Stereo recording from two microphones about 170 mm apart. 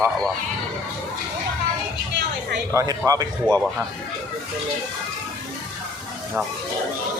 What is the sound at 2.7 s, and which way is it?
Speech, 20° right (ahead or behind).